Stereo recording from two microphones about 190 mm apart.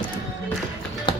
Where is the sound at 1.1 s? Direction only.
25° left (ahead or behind).